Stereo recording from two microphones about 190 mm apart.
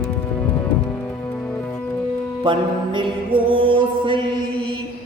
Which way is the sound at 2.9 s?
25° right (ahead or behind).